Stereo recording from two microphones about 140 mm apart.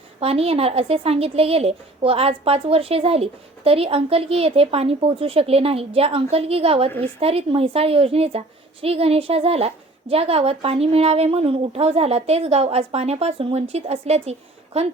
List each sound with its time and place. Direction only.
0.2 s a woman's voice: 45° right (ahead or behind)